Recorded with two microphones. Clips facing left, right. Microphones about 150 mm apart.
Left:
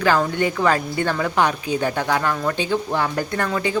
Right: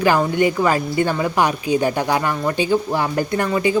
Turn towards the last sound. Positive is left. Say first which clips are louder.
# right 4 dB
turn(degrees=-10)  # may be behind; listen again after turning